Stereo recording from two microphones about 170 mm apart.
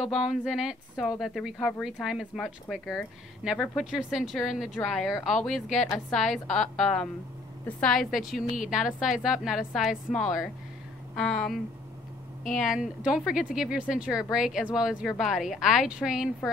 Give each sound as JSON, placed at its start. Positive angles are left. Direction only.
{"t": 0.1, "sound": "speech", "side_deg": 0}